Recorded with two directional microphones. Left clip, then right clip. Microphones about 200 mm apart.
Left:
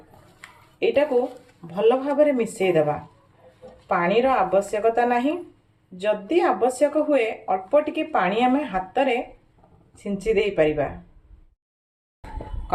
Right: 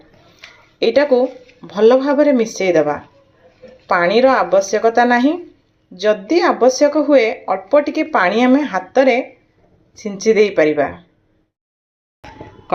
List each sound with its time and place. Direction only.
1.6 s speech: 20° right (ahead or behind)
3.8 s speech: 20° right (ahead or behind)